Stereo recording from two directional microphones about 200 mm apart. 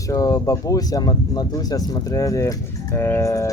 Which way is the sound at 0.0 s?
15° left (ahead or behind).